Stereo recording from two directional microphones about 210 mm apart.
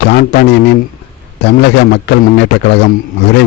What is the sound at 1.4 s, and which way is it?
A man's voice, 55° left (ahead or behind).